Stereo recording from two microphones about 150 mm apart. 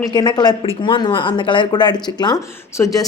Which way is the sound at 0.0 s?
25° left (ahead or behind).